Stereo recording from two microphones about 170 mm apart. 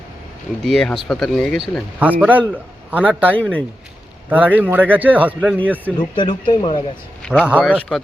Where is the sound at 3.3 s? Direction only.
10° left (ahead or behind).